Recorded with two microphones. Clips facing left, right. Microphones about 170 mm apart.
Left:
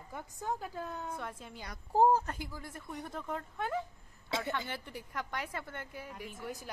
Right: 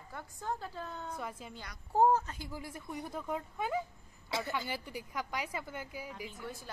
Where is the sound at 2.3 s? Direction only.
60° left (ahead or behind).